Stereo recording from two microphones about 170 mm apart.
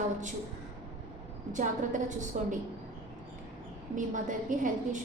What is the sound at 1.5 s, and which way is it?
A woman's voice, 45° right (ahead or behind).